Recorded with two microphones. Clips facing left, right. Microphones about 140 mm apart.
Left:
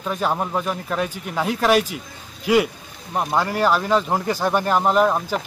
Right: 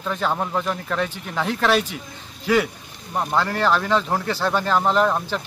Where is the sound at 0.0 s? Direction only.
10° left (ahead or behind).